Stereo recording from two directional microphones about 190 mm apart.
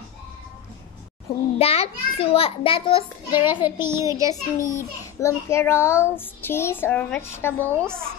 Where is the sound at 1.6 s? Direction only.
30° left (ahead or behind).